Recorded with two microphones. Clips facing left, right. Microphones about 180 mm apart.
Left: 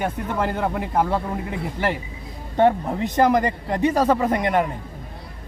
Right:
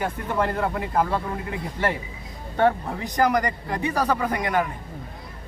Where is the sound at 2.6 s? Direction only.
20° left (ahead or behind).